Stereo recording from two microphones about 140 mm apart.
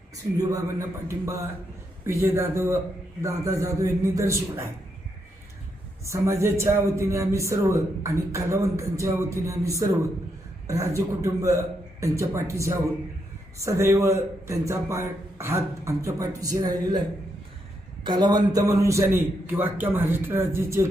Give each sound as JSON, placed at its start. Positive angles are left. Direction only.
{"t": 0.3, "sound": "speech", "side_deg": -20}
{"t": 6.1, "sound": "speech", "side_deg": -20}
{"t": 18.0, "sound": "speech", "side_deg": -35}